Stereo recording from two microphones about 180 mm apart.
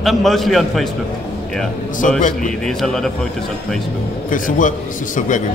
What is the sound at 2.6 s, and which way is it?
Speech, centre (ahead or behind).